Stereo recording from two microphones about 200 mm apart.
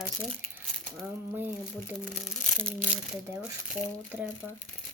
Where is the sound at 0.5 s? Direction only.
10° right (ahead or behind).